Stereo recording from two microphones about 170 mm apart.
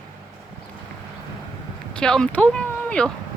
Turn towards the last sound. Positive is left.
turn(degrees=5)  # may be behind; listen again after turning